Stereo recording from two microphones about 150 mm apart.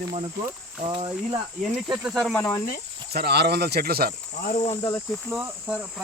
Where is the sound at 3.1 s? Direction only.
90° right.